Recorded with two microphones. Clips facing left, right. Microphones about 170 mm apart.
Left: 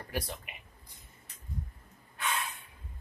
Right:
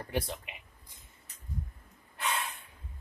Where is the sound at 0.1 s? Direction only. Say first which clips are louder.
Right 3 dB; 20° right (ahead or behind).